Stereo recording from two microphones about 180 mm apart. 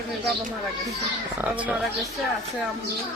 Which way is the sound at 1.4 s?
5° right (ahead or behind).